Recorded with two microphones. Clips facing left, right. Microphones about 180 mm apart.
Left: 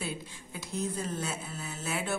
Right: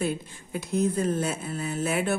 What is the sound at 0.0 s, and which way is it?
Speech, 55° right (ahead or behind).